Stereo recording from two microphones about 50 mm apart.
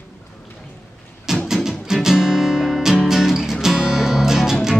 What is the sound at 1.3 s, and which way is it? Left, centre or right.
Music, centre.